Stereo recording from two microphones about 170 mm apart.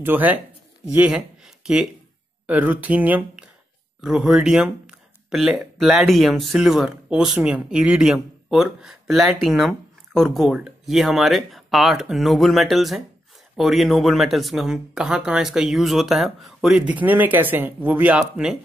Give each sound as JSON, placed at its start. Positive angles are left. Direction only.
{"t": 0.0, "sound": "speech", "side_deg": -10}
{"t": 2.4, "sound": "speech", "side_deg": -10}